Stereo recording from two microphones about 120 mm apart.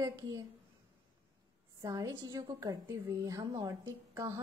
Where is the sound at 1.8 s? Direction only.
30° right (ahead or behind).